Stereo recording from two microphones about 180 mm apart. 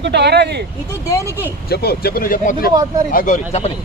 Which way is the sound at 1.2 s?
15° right (ahead or behind).